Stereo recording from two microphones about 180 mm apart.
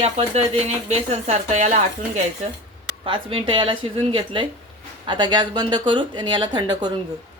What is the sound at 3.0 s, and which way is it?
Speech, 30° right (ahead or behind).